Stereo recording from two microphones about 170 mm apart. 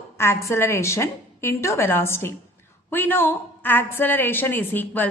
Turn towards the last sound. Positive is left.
turn(degrees=10)  # may be behind; listen again after turning